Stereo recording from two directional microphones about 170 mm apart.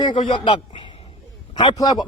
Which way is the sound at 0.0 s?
30° left (ahead or behind).